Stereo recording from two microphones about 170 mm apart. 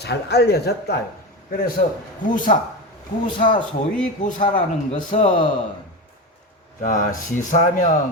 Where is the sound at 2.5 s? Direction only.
50° left (ahead or behind).